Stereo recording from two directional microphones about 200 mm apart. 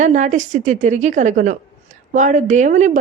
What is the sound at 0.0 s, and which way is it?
Speech, 40° right (ahead or behind).